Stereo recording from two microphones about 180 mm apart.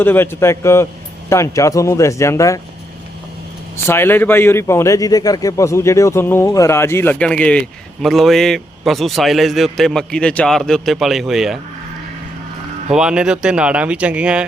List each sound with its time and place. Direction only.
0.0 s speech: 10° left (ahead or behind)
3.8 s a man's voice: 15° left (ahead or behind)
12.9 s a man's voice: 5° right (ahead or behind)